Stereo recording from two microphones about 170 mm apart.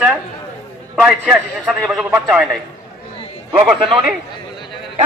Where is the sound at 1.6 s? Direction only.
Centre (ahead or behind).